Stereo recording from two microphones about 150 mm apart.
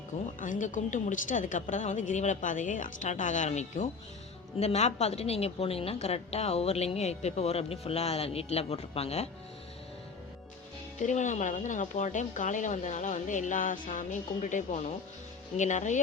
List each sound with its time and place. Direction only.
0.3 s a woman's voice: 60° left (ahead or behind); by 9.3 s 45° left (ahead or behind)
11.0 s a woman's voice: 55° left (ahead or behind)